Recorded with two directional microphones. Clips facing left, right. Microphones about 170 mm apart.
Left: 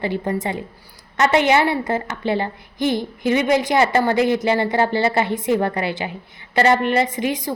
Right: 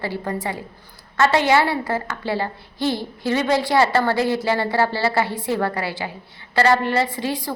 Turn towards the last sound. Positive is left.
turn(degrees=15)  # may be behind; listen again after turning